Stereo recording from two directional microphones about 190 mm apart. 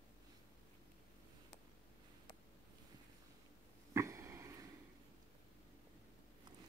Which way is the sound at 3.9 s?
15° right (ahead or behind).